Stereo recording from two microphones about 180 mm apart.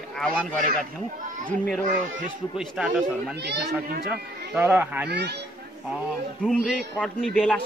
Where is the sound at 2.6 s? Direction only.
Centre (ahead or behind).